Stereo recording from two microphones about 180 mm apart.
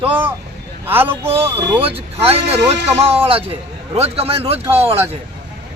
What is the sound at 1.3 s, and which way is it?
Speech, 30° right (ahead or behind).